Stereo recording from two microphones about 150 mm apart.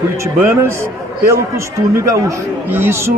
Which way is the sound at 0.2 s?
15° right (ahead or behind).